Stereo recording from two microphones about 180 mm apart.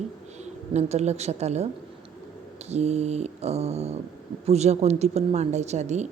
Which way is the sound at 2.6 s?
35° right (ahead or behind).